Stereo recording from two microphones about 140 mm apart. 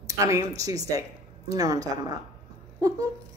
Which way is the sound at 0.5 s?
25° right (ahead or behind).